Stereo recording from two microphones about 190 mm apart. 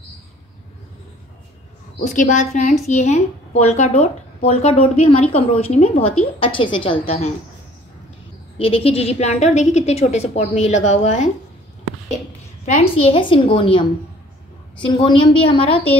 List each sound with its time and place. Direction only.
2.0 s speech: 40° left (ahead or behind)
8.5 s speech: 30° left (ahead or behind)
12.6 s a woman's voice: 35° left (ahead or behind)